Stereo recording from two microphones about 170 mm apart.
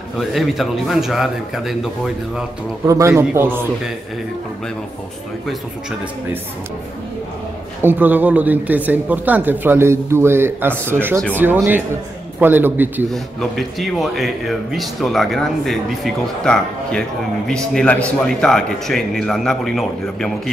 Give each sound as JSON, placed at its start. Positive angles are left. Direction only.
{"t": 0.2, "sound": "speech", "side_deg": 0}
{"t": 2.9, "sound": "speech", "side_deg": -15}
{"t": 7.8, "sound": "speech", "side_deg": -10}
{"t": 13.1, "sound": "speech", "side_deg": 0}